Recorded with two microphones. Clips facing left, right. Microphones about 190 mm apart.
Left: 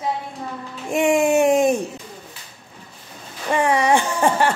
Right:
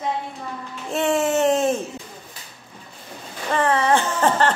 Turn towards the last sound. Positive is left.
turn(degrees=10)  # may be behind; listen again after turning